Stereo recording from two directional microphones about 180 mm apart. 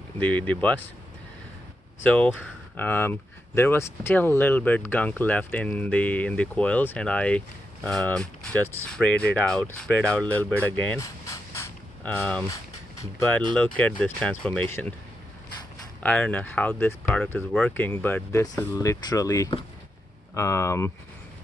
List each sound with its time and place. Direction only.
0.2 s speech: 10° left (ahead or behind)
2.0 s speech: 5° left (ahead or behind)
13.6 s speech: 5° left (ahead or behind)
16.0 s speech: 5° left (ahead or behind)